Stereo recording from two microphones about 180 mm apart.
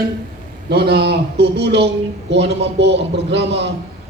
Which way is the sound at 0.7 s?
65° right (ahead or behind).